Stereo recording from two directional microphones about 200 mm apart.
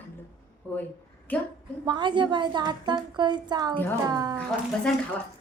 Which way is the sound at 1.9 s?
25° right (ahead or behind).